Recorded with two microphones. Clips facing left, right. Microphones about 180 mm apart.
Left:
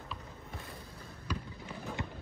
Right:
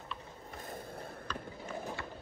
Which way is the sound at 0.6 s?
50° right (ahead or behind).